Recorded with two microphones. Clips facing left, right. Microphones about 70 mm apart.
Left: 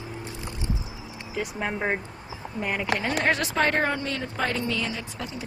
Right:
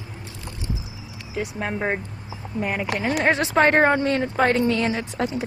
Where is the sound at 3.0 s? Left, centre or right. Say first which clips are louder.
Right 7 dB; centre.